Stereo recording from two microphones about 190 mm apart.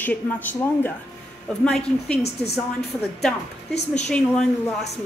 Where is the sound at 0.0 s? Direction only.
10° left (ahead or behind).